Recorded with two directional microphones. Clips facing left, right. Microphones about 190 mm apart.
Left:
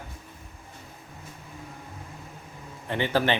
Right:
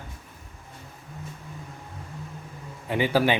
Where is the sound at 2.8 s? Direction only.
10° right (ahead or behind).